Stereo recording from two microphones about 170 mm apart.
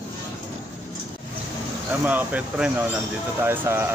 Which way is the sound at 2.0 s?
10° right (ahead or behind).